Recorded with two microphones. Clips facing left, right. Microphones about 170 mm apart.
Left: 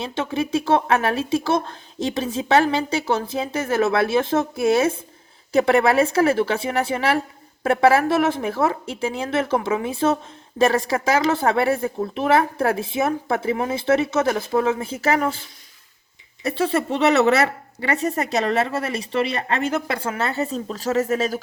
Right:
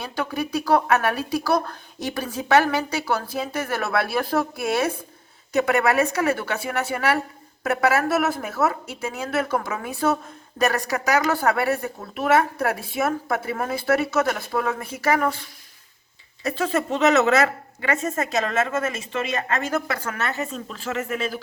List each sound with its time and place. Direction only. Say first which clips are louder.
0.0 s speech: left 3 dB; 25° left (ahead or behind)
16.6 s a woman's voice: left 2 dB; 30° left (ahead or behind)